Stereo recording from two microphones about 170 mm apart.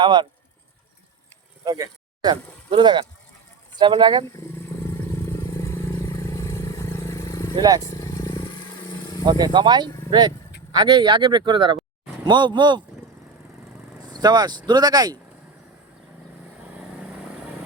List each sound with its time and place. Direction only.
0.0 s speech: 25° right (ahead or behind)
1.6 s speech: 20° right (ahead or behind)
5.5 s vehicle: 20° left (ahead or behind)
7.5 s speech: 20° right (ahead or behind)
7.8 s vehicle: 20° left (ahead or behind)
9.2 s speech: 25° right (ahead or behind)
14.1 s speech: 25° right (ahead or behind)